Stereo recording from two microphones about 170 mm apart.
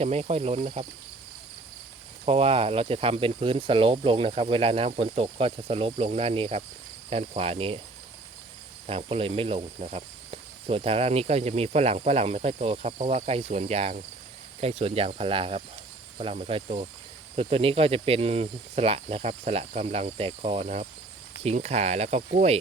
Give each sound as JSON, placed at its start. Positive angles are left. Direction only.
{"t": 0.0, "sound": "speech", "side_deg": -35}
{"t": 2.2, "sound": "speech", "side_deg": -35}
{"t": 8.9, "sound": "speech", "side_deg": -35}